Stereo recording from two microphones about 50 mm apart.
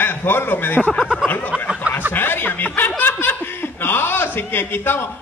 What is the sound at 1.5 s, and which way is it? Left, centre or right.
Snicker, right.